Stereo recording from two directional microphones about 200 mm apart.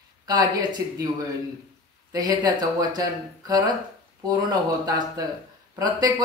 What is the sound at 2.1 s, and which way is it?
Speech, 20° right (ahead or behind).